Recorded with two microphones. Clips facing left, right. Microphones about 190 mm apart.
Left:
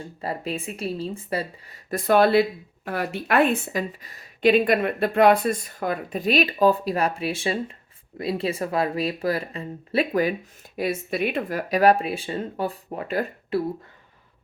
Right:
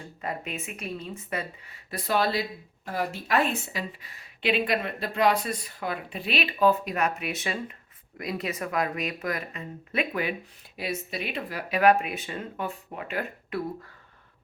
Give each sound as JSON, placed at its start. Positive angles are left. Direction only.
{"t": 0.2, "sound": "speech", "side_deg": 35}
{"t": 10.8, "sound": "speech", "side_deg": 50}